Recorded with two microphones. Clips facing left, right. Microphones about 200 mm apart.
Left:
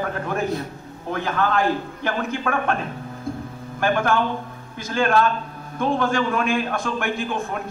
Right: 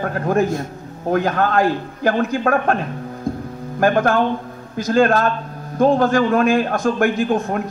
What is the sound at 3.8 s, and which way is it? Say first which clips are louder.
A man's voice: right 5 dB; 40° right (ahead or behind).